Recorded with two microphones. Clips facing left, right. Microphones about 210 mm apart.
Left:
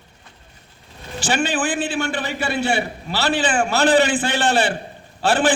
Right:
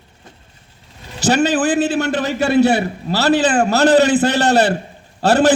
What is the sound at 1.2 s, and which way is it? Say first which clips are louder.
A man's voice: right 7 dB; 40° right (ahead or behind).